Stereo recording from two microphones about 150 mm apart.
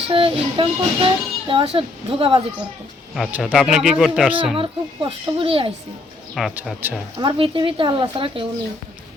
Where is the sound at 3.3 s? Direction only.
10° right (ahead or behind).